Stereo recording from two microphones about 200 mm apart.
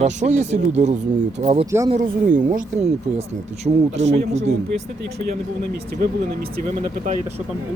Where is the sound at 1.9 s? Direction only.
40° right (ahead or behind).